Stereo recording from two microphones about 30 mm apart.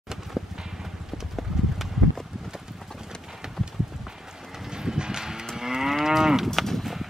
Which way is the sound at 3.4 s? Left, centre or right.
Right.